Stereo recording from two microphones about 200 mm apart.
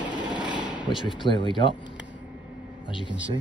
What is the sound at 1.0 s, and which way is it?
Speech, 25° left (ahead or behind).